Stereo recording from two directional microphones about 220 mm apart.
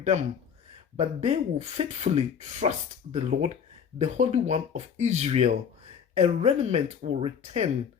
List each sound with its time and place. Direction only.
0.0 s speech: 30° right (ahead or behind)